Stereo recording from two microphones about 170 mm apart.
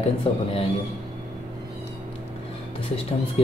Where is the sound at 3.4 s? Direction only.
35° left (ahead or behind).